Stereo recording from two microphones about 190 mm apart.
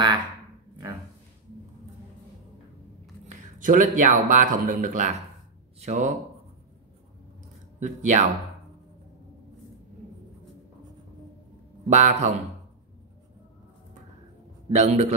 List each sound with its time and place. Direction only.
3.3 s speech: 45° right (ahead or behind)
7.8 s speech: 40° right (ahead or behind)
11.9 s speech: 35° right (ahead or behind)
14.7 s speech: 35° right (ahead or behind)